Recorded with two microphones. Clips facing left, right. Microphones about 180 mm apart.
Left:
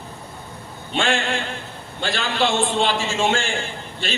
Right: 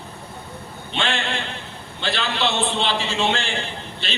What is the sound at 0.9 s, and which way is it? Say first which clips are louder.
A man's voice: left 3 dB; 45° left (ahead or behind).